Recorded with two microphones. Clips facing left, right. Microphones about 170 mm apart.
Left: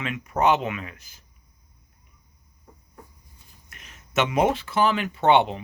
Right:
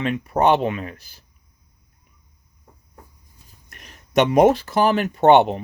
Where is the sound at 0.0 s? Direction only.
35° right (ahead or behind).